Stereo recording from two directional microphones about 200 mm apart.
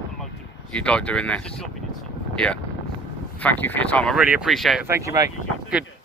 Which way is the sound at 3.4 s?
10° left (ahead or behind).